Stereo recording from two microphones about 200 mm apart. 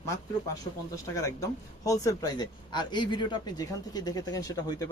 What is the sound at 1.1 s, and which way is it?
Speech, 15° left (ahead or behind).